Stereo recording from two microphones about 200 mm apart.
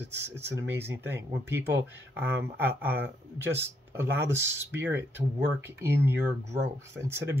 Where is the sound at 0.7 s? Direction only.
10° right (ahead or behind).